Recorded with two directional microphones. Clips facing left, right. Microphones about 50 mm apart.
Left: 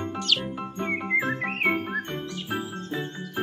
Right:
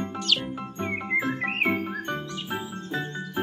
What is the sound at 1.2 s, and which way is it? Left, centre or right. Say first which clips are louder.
Frog: even; left.